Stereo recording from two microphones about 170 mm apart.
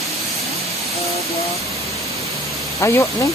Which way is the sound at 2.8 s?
15° left (ahead or behind).